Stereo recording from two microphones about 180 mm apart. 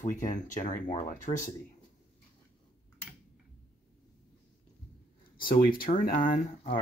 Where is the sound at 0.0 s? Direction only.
45° left (ahead or behind).